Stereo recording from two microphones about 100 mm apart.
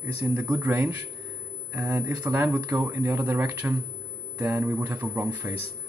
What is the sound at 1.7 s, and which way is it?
Speech, 20° right (ahead or behind).